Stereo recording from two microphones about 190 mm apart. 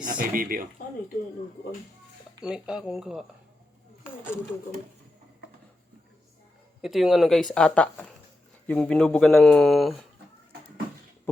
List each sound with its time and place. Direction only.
0.2 s speech: 50° right (ahead or behind)
2.4 s speech: 5° right (ahead or behind)
4.0 s speech: 10° left (ahead or behind)
6.8 s speech: centre (ahead or behind)